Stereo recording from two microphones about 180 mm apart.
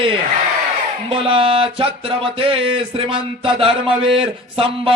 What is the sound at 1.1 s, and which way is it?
Speech, 30° right (ahead or behind).